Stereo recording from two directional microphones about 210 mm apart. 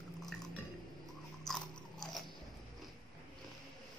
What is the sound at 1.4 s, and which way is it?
Biting, centre (ahead or behind).